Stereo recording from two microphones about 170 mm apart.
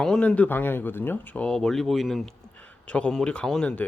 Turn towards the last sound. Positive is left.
turn(degrees=5)  # may be behind; listen again after turning